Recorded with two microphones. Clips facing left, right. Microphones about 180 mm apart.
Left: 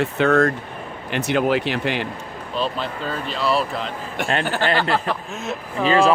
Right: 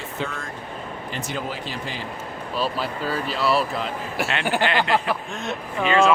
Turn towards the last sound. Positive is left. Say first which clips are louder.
# left 2 dB
turn(degrees=35)  # may be behind; listen again after turning